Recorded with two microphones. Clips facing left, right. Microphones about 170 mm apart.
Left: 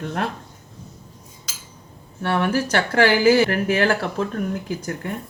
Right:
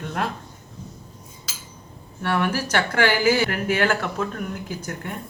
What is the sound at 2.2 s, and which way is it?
Speech, 30° left (ahead or behind).